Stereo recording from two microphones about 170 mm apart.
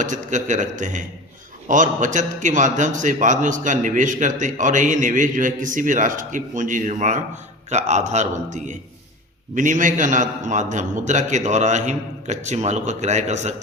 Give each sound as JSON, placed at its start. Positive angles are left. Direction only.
{"t": 0.0, "sound": "a man's voice", "side_deg": -45}